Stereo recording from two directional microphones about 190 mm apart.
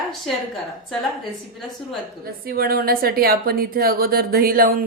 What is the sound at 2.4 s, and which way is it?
Speech, 50° right (ahead or behind).